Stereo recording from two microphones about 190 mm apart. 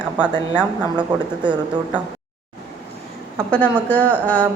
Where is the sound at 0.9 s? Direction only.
25° right (ahead or behind).